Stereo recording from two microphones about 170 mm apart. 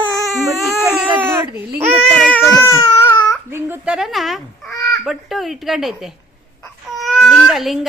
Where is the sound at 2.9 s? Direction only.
15° left (ahead or behind).